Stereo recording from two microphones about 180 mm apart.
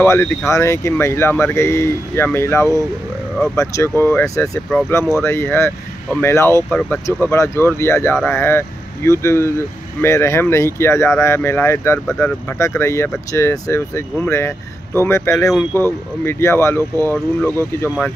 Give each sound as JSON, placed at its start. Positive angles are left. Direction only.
{"t": 0.0, "sound": "speech", "side_deg": 15}